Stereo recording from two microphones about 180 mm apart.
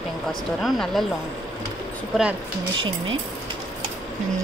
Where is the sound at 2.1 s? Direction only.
Centre (ahead or behind).